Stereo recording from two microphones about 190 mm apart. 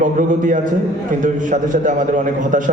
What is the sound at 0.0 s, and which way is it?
A man's voice, 40° right (ahead or behind).